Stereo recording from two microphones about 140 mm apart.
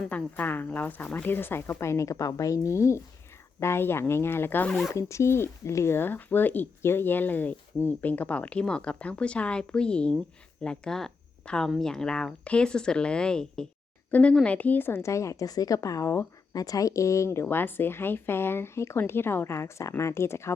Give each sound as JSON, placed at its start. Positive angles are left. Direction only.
{"t": 0.1, "sound": "a woman's voice", "side_deg": 10}
{"t": 4.7, "sound": "speech", "side_deg": 0}
{"t": 4.9, "sound": "a woman's voice", "side_deg": 20}